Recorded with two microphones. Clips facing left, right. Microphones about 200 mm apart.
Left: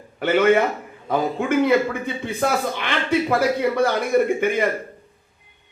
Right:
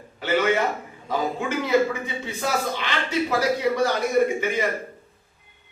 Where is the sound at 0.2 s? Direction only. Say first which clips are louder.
Left 5 dB; 55° left (ahead or behind).